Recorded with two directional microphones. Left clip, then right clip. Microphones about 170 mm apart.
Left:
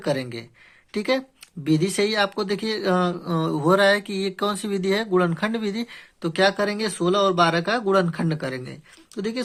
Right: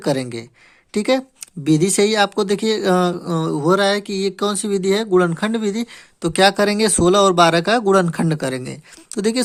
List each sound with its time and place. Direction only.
0.0 s speech: 35° right (ahead or behind)
6.3 s speech: 40° right (ahead or behind)